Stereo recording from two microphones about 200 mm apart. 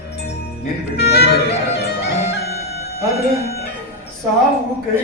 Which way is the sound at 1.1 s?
55° left (ahead or behind).